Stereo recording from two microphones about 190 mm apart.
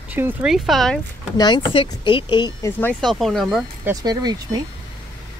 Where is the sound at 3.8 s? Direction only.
20° right (ahead or behind).